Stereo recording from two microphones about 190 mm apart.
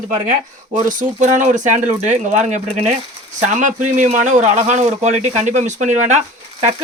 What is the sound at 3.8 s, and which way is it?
Speech, 40° right (ahead or behind).